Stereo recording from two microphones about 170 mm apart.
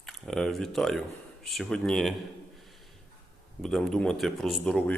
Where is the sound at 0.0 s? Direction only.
5° left (ahead or behind).